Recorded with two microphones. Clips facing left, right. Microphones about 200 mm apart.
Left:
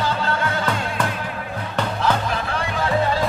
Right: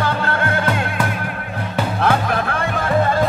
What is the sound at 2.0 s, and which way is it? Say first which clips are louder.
Music: right 5 dB; 60° right (ahead or behind).